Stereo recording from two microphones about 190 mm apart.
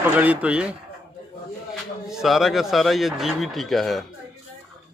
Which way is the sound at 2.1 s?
Centre (ahead or behind).